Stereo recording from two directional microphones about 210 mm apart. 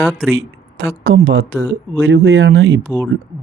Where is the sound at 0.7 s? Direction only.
75° right (ahead or behind).